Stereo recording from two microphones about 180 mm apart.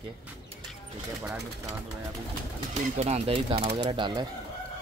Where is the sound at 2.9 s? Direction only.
40° right (ahead or behind).